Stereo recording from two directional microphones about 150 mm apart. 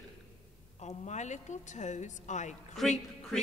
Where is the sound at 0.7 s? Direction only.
50° left (ahead or behind).